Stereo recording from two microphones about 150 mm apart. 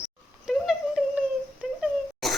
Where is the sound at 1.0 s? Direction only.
5° right (ahead or behind).